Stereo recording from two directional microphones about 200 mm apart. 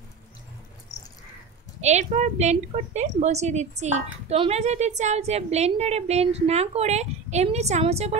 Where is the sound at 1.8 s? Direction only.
35° right (ahead or behind).